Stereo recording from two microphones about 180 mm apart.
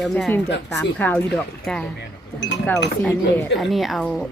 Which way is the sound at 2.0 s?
75° left (ahead or behind).